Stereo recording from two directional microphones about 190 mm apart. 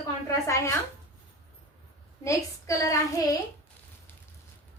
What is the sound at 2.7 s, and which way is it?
Speech, 15° left (ahead or behind).